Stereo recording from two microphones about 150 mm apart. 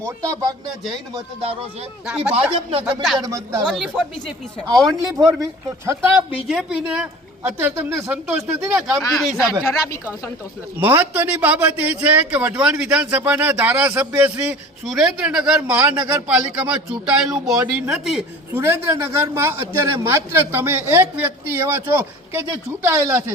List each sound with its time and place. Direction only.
0.0 s speech: 20° right (ahead or behind)
2.0 s a man's voice: 10° right (ahead or behind)
3.2 s speech: 20° right (ahead or behind)
4.9 s a man's voice: 25° right (ahead or behind)
6.5 s a man's voice: 5° right (ahead or behind)
10.8 s a man's voice: 15° right (ahead or behind)
18.5 s a man's voice: 15° right (ahead or behind)